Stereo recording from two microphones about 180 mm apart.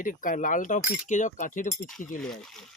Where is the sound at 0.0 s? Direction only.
50° left (ahead or behind).